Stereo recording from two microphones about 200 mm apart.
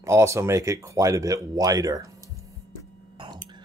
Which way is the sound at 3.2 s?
25° right (ahead or behind).